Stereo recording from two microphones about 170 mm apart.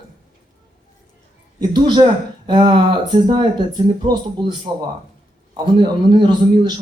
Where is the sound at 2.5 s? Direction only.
25° right (ahead or behind).